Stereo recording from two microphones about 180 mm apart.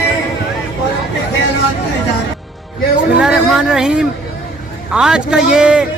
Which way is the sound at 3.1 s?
5° right (ahead or behind).